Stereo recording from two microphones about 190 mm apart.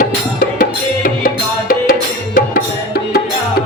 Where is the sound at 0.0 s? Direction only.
45° left (ahead or behind).